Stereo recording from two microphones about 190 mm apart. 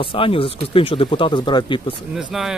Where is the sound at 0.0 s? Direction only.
30° left (ahead or behind).